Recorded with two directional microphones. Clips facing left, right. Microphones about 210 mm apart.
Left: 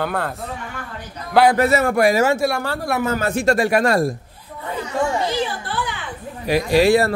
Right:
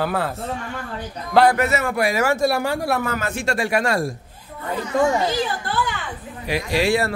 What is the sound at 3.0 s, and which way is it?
A man's voice, 35° left (ahead or behind).